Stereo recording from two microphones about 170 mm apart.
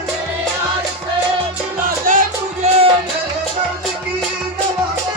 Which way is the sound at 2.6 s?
35° right (ahead or behind).